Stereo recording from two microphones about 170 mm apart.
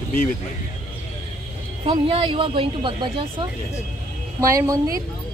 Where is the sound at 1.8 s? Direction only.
30° right (ahead or behind).